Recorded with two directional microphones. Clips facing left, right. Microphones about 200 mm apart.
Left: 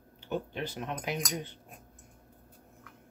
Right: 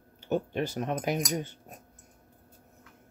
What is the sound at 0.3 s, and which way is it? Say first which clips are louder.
Speech: right 6 dB; 45° right (ahead or behind).